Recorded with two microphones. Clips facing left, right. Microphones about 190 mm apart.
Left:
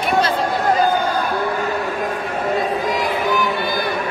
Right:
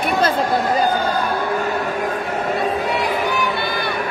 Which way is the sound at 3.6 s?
65° right (ahead or behind).